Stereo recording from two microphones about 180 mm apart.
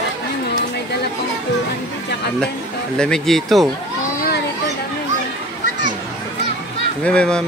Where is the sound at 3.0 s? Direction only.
5° left (ahead or behind).